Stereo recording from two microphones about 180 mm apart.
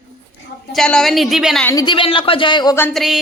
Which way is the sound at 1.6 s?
25° left (ahead or behind).